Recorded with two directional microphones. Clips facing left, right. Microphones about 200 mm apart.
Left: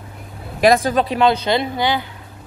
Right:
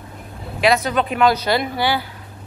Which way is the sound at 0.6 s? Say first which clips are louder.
Left 3 dB; 45° left (ahead or behind).